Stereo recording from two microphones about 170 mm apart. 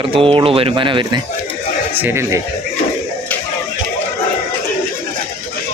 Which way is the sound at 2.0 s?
15° right (ahead or behind).